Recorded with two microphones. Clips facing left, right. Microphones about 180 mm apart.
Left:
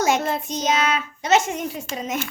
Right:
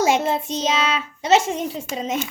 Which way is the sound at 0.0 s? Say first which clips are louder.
Right 2 dB; 25° right (ahead or behind).